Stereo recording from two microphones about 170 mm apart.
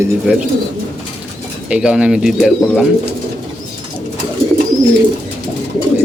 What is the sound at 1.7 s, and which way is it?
Speech, 5° right (ahead or behind).